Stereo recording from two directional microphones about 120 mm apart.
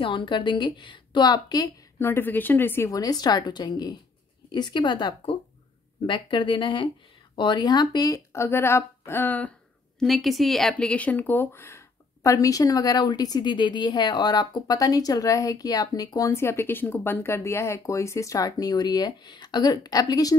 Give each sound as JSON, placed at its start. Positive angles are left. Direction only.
{"t": 0.0, "sound": "speech", "side_deg": 45}
{"t": 2.0, "sound": "speech", "side_deg": 20}
{"t": 2.9, "sound": "speech", "side_deg": 30}
{"t": 9.9, "sound": "speech", "side_deg": 0}